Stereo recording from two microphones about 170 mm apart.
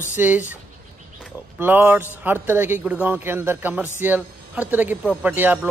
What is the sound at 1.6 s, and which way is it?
Speech, 10° right (ahead or behind).